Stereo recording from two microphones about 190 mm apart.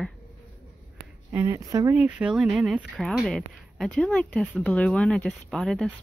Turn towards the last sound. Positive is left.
turn(degrees=0)  # may be behind; listen again after turning